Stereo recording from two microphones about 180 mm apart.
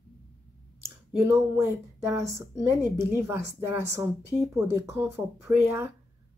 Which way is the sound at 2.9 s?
15° right (ahead or behind).